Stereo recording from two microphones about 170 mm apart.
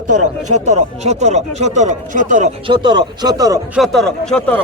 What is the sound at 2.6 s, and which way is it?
Speech, 25° right (ahead or behind).